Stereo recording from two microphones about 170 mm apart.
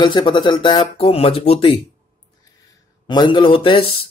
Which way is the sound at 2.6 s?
25° left (ahead or behind).